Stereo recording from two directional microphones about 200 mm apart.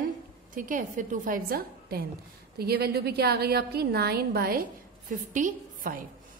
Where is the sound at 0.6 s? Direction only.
40° right (ahead or behind).